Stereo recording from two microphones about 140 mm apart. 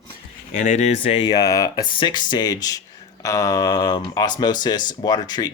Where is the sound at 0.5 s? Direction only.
60° left (ahead or behind); by 1.3 s 45° left (ahead or behind).